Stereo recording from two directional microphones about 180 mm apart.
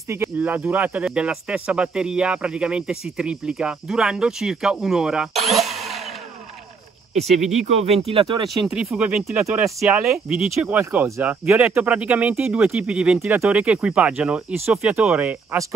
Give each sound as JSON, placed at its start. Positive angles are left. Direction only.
{"t": 0.1, "sound": "speech", "side_deg": -10}
{"t": 7.2, "sound": "speech", "side_deg": -40}
{"t": 8.5, "sound": "speech", "side_deg": 0}